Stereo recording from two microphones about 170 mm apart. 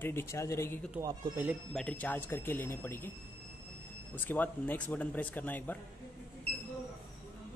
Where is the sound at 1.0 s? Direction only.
20° right (ahead or behind).